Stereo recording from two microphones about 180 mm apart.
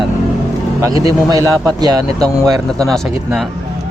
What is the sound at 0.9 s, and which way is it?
Speech, 20° right (ahead or behind).